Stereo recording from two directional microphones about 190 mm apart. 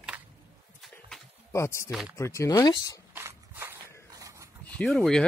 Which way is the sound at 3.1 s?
10° right (ahead or behind).